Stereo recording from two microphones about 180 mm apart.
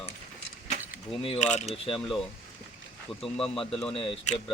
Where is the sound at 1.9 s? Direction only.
Centre (ahead or behind).